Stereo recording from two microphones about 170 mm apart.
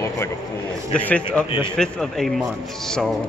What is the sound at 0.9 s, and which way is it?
A man's voice, 10° left (ahead or behind).